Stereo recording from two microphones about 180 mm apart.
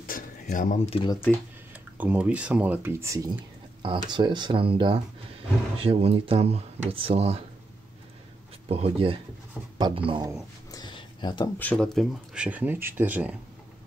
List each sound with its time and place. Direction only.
0.0 s a sound: 50° left (ahead or behind)
0.8 s speech: 30° left (ahead or behind)
1.7 s speech: 10° right (ahead or behind); by 7.4 s 35° right (ahead or behind)
8.6 s speech: 35° right (ahead or behind)
10.7 s a sound: 25° left (ahead or behind)
11.5 s speech: 10° left (ahead or behind); by 13.4 s 10° right (ahead or behind)